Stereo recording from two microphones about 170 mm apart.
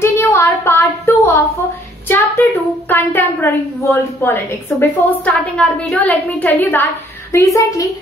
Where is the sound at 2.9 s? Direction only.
10° left (ahead or behind).